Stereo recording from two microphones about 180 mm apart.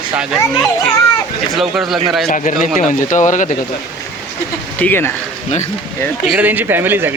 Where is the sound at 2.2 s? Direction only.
45° left (ahead or behind).